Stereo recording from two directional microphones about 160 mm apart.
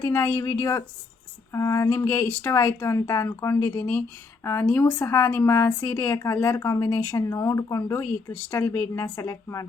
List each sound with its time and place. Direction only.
0.0 s a woman's voice: 10° left (ahead or behind)